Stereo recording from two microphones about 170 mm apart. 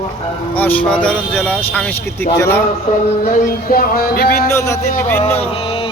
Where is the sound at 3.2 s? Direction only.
60° left (ahead or behind).